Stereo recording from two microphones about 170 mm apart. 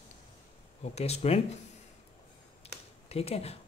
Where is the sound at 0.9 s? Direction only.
40° left (ahead or behind).